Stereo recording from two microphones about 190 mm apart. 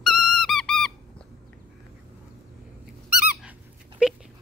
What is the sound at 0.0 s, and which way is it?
Music, centre (ahead or behind).